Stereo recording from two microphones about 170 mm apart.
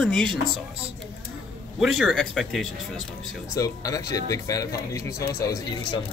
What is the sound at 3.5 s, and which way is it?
Speech, 20° left (ahead or behind).